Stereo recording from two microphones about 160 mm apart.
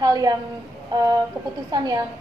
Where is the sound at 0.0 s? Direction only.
25° right (ahead or behind).